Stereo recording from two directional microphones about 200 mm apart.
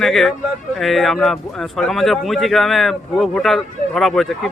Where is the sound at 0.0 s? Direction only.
Centre (ahead or behind).